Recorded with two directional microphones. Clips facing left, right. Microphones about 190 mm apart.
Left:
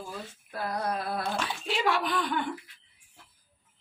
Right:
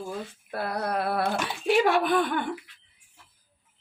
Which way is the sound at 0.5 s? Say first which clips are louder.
Right 3 dB; 65° right (ahead or behind).